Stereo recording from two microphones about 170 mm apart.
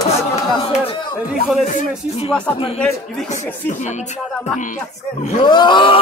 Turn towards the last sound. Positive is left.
turn(degrees=30)  # may be behind; listen again after turning